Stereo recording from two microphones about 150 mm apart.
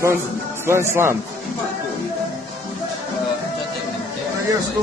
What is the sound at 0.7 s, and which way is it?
Speech, 15° right (ahead or behind).